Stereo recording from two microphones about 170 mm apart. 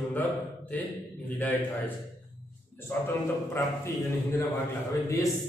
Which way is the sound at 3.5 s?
15° left (ahead or behind).